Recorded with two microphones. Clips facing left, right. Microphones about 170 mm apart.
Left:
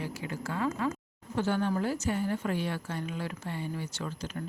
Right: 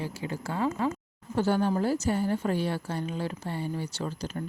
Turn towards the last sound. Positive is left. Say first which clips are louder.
# right 4 dB
turn(degrees=-35)  # may be behind; listen again after turning